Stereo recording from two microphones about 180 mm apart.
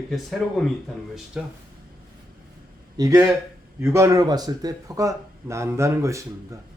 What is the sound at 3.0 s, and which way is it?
Speech, 20° right (ahead or behind).